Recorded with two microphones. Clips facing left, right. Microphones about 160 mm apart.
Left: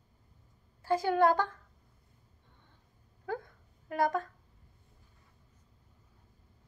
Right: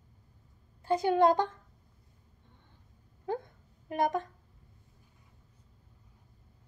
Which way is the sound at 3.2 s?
20° right (ahead or behind).